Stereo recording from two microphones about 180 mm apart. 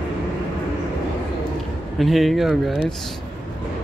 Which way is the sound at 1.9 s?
Centre (ahead or behind).